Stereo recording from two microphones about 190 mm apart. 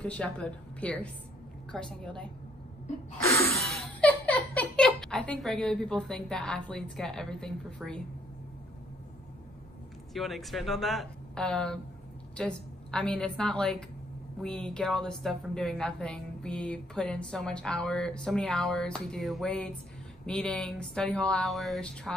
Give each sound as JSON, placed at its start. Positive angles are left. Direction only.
{"t": 0.0, "sound": "a woman's voice", "side_deg": 5}
{"t": 3.3, "sound": "a sound", "side_deg": 15}
{"t": 3.7, "sound": "speech", "side_deg": 10}
{"t": 10.1, "sound": "a woman's voice", "side_deg": 0}